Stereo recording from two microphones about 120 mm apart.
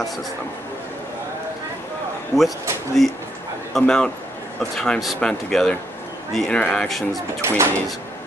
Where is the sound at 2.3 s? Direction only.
20° left (ahead or behind).